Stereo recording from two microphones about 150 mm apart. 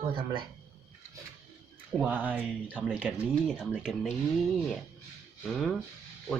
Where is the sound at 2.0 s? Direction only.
10° right (ahead or behind).